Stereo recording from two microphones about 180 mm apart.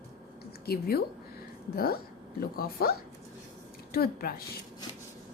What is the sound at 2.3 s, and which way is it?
Speech, 55° left (ahead or behind).